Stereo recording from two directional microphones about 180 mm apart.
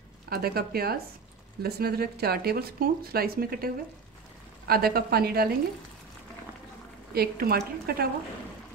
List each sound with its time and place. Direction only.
0.3 s speech: 60° right (ahead or behind)
7.2 s speech: 55° right (ahead or behind)